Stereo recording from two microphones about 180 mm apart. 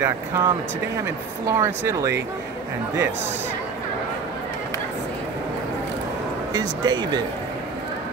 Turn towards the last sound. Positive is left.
turn(degrees=-25)  # may be behind; listen again after turning